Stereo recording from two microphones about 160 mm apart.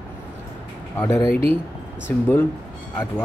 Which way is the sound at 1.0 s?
10° left (ahead or behind).